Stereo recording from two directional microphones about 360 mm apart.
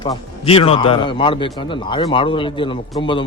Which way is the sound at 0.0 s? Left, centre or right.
Centre.